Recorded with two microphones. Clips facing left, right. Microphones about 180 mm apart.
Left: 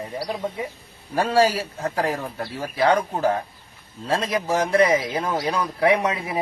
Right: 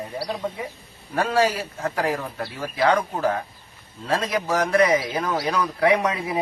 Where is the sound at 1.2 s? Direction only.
30° left (ahead or behind).